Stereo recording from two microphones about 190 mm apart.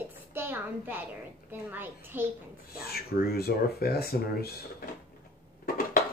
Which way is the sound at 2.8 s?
55° left (ahead or behind).